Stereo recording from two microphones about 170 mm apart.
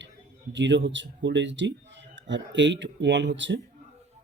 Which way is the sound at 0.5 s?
90° right.